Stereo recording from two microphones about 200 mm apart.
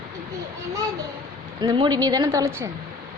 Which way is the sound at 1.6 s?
20° right (ahead or behind).